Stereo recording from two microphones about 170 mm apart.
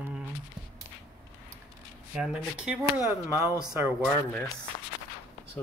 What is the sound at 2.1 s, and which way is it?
Speech, 5° right (ahead or behind).